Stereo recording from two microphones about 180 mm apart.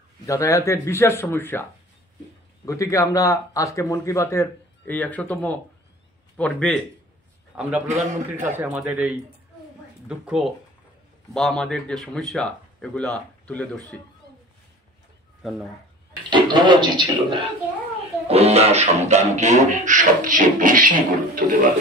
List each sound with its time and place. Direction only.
0.3 s a man's voice: 15° left (ahead or behind)
7.5 s speech: 5° right (ahead or behind)
7.9 s a man's voice: 40° right (ahead or behind)
8.5 s speech: 10° right (ahead or behind); by 13.7 s 5° left (ahead or behind)
16.3 s speech: 25° right (ahead or behind)
18.3 s music: 35° right (ahead or behind)